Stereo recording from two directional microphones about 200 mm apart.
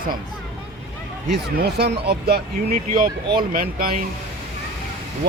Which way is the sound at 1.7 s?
55° right (ahead or behind).